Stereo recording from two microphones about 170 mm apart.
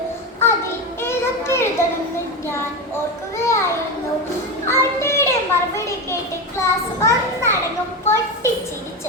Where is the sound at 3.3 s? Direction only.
15° left (ahead or behind).